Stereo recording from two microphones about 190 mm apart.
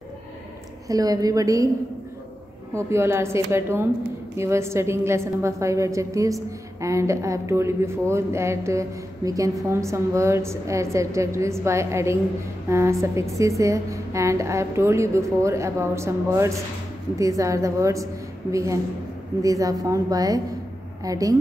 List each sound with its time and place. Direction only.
0.8 s a woman's voice: 20° right (ahead or behind)
2.7 s a woman's voice: 15° right (ahead or behind)